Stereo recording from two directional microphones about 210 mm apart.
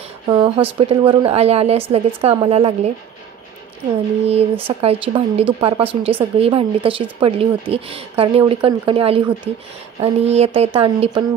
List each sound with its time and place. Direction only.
0.3 s speech: 20° right (ahead or behind)
4.3 s speech: 30° right (ahead or behind)